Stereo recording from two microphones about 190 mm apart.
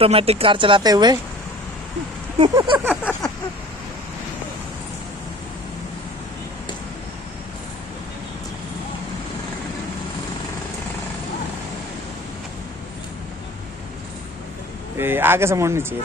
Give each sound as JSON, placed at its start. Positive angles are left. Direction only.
{"t": 0.0, "sound": "speech", "side_deg": -30}
{"t": 2.5, "sound": "speech", "side_deg": -25}
{"t": 3.0, "sound": "a sound", "side_deg": 10}
{"t": 15.0, "sound": "speech", "side_deg": -10}